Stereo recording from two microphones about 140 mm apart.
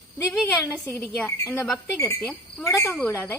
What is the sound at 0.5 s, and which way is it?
Speech, 15° left (ahead or behind).